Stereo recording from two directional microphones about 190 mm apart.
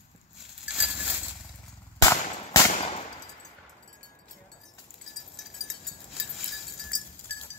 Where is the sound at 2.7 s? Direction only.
35° left (ahead or behind).